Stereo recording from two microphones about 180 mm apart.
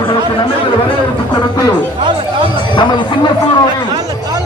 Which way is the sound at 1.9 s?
25° right (ahead or behind).